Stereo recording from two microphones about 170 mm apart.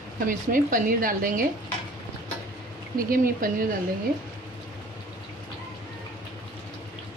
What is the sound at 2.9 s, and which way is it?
Speech, 60° right (ahead or behind).